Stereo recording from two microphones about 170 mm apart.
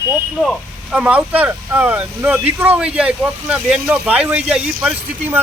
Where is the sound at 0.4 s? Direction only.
5° right (ahead or behind).